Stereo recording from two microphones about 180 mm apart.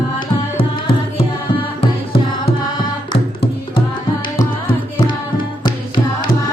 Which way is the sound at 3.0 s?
30° left (ahead or behind).